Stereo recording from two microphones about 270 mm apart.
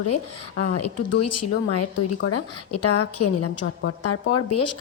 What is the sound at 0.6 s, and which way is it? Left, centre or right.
A woman's voice, left.